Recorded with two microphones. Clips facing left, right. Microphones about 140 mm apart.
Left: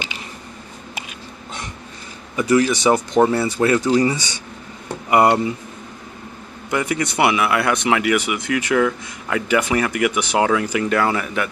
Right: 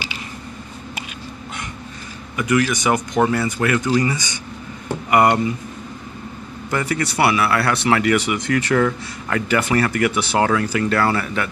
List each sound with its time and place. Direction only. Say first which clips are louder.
2.3 s speech: left 2 dB; 30° left (ahead or behind)
6.7 s speech: left 1 dB; 15° left (ahead or behind)